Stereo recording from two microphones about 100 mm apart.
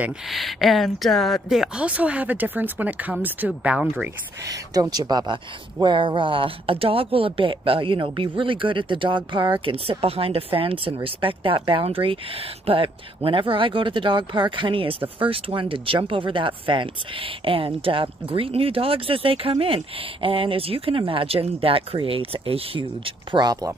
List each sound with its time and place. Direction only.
0.3 s speech: centre (ahead or behind)
4.5 s speech: 40° right (ahead or behind)